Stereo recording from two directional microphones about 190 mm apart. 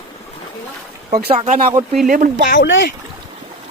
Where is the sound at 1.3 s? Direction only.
30° right (ahead or behind).